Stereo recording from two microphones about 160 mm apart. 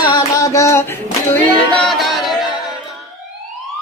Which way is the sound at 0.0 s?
25° left (ahead or behind).